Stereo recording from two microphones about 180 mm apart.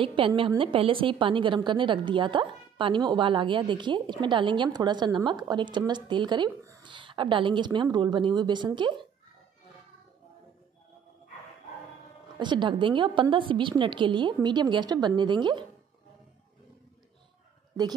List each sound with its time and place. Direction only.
0.0 s a woman's voice: 30° right (ahead or behind)
12.4 s a woman's voice: 25° right (ahead or behind)